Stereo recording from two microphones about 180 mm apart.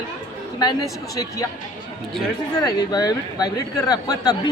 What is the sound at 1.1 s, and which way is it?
Speech, 20° left (ahead or behind).